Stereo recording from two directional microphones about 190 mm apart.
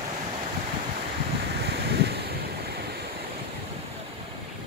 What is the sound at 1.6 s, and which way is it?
Waves, 60° right (ahead or behind).